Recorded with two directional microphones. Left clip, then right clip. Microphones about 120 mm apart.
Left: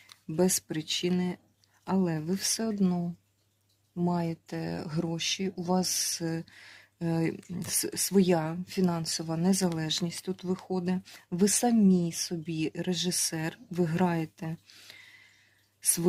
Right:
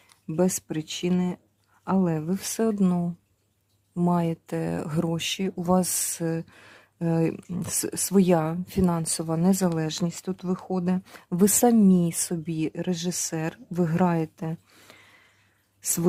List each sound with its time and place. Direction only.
0.3 s speech: 30° right (ahead or behind)
2.8 s speech: 30° right (ahead or behind)
6.2 s speech: 30° right (ahead or behind)